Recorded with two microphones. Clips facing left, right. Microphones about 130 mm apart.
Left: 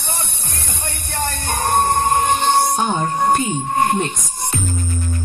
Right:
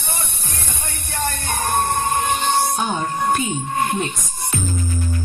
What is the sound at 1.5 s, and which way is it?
Music, centre (ahead or behind).